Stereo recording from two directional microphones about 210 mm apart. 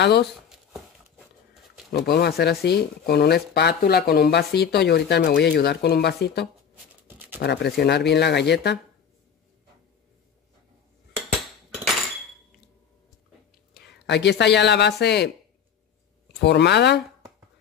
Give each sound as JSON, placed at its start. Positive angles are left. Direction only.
{"t": 0.0, "sound": "speech", "side_deg": 55}
{"t": 0.7, "sound": "a sound", "side_deg": 0}
{"t": 2.0, "sound": "speech", "side_deg": 50}
{"t": 13.7, "sound": "speech", "side_deg": 55}
{"t": 16.3, "sound": "speech", "side_deg": 55}